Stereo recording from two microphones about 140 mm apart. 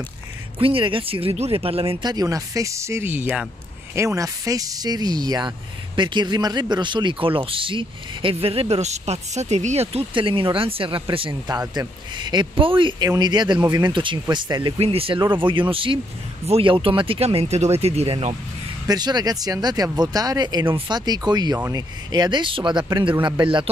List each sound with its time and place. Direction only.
0.6 s speech: 40° right (ahead or behind)
18.9 s speech: 30° right (ahead or behind)